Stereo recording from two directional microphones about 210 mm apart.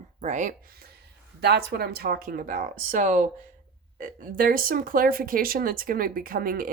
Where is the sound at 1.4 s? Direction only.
50° right (ahead or behind).